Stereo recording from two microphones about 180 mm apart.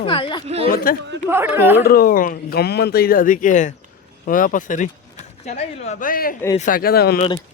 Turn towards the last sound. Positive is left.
turn(degrees=60)  # may be behind; listen again after turning